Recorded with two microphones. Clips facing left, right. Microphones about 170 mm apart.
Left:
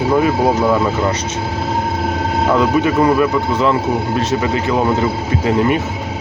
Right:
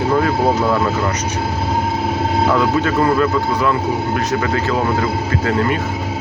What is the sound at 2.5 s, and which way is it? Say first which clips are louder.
Speech: left 4 dB; 15° left (ahead or behind).